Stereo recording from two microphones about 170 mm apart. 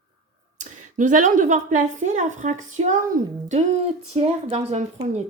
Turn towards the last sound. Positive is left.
turn(degrees=-40)  # may be behind; listen again after turning